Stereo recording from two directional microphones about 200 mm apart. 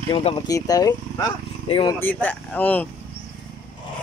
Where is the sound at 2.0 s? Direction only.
10° left (ahead or behind).